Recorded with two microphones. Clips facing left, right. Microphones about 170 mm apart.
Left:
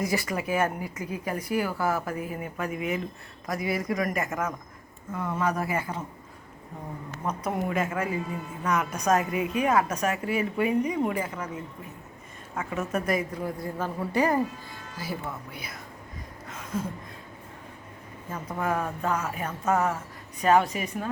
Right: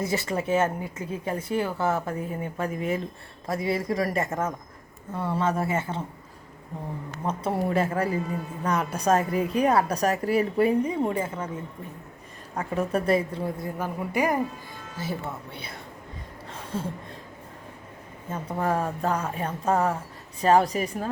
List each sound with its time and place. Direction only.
0.0 s a woman's voice: 25° right (ahead or behind)
7.3 s a woman's voice: 30° right (ahead or behind)
13.7 s speech: 10° right (ahead or behind); by 15.8 s 30° right (ahead or behind)
16.5 s a sound: 30° right (ahead or behind)
18.5 s a woman's voice: 30° right (ahead or behind)